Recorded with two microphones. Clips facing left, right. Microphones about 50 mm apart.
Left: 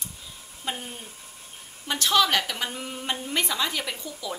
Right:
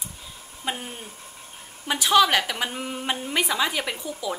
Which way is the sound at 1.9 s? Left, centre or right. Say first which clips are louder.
Right 3 dB; centre.